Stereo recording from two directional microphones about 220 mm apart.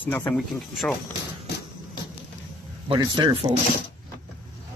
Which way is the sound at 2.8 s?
20° right (ahead or behind).